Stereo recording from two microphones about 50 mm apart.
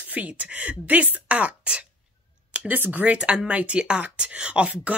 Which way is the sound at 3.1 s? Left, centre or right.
Centre.